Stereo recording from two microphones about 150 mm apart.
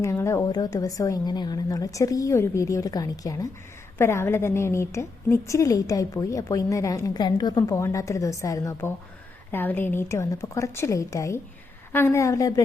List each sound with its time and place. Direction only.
0.0 s a woman's voice: 20° left (ahead or behind)